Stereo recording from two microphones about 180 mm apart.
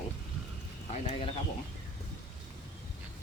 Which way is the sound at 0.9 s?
40° left (ahead or behind).